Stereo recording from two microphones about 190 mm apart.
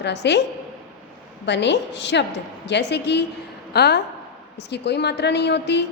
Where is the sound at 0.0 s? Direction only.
65° left (ahead or behind).